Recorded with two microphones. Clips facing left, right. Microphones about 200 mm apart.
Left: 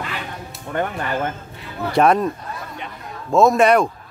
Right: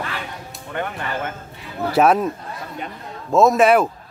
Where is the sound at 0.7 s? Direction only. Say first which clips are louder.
Left 4 dB; 40° left (ahead or behind).